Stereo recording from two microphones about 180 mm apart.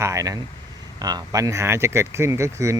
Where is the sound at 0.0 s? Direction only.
20° right (ahead or behind).